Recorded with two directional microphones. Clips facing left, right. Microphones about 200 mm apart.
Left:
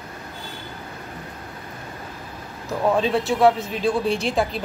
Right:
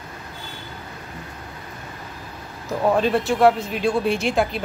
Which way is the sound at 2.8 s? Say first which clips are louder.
Right 1 dB; centre (ahead or behind).